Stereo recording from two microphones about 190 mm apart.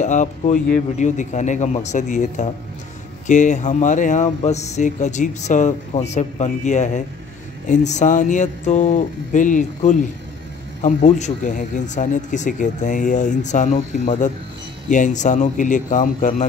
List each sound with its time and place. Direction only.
0.0 s speech: 40° left (ahead or behind)